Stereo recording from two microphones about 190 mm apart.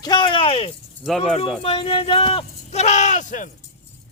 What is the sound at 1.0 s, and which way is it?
Speech, centre (ahead or behind).